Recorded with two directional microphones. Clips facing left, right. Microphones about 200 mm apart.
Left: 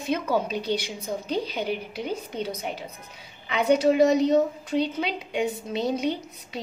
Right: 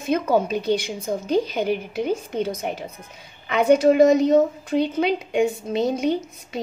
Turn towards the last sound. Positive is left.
turn(degrees=-50)  # may be behind; listen again after turning